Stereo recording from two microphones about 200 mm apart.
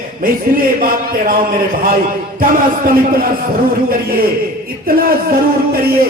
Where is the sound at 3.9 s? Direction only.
45° right (ahead or behind).